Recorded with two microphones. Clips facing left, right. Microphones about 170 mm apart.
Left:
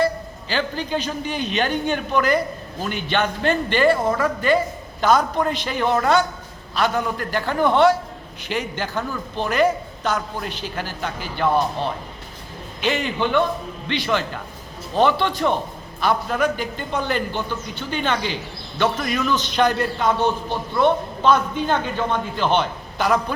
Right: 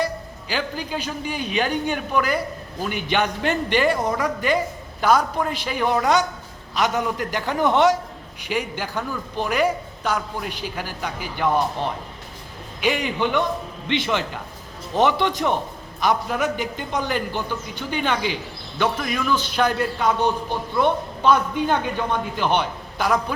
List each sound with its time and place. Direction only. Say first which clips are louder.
0.0 s a man's voice: left 4 dB; 10° right (ahead or behind)